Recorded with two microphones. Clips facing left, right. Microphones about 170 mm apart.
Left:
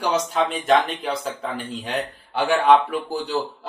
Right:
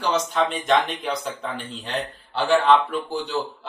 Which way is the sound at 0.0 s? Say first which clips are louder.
Left 1 dB; 5° left (ahead or behind).